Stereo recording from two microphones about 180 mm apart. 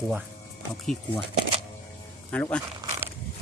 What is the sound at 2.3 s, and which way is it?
Speech, 5° left (ahead or behind).